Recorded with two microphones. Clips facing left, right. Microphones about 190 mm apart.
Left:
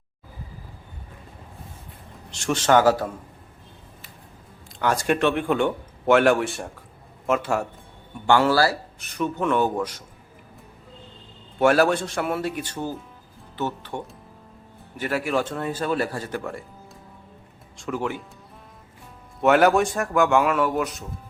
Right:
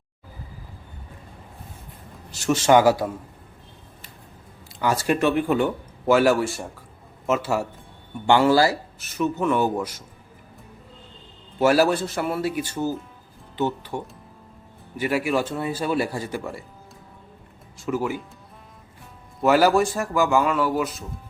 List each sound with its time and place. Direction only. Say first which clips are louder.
2.3 s a man's voice: right 2 dB; 5° right (ahead or behind)
4.8 s a man's voice: even; 5° right (ahead or behind)
11.6 s a man's voice: even; 5° right (ahead or behind)
17.7 s speech: right 2 dB; 5° right (ahead or behind)
19.4 s speech: even; centre (ahead or behind)